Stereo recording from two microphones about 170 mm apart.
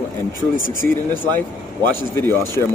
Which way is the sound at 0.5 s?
55° left (ahead or behind).